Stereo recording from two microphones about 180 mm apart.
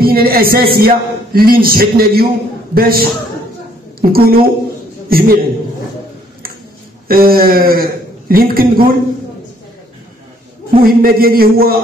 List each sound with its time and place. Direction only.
0.0 s a man's voice: 55° right (ahead or behind)
7.1 s a man's voice: 55° right (ahead or behind)
10.8 s a man's voice: 55° right (ahead or behind)